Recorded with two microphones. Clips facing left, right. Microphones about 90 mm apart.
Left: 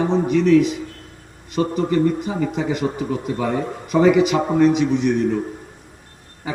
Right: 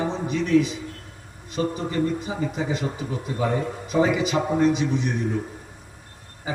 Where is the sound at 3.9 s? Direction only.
70° left (ahead or behind).